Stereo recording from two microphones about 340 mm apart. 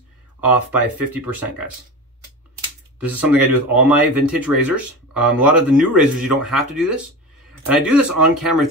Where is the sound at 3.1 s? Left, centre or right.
Centre.